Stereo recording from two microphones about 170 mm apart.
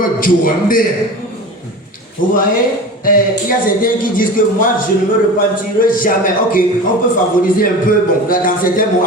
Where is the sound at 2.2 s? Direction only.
50° left (ahead or behind).